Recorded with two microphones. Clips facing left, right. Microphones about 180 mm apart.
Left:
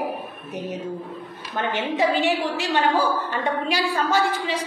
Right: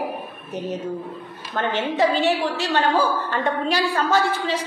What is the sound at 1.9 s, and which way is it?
Speech, 35° right (ahead or behind).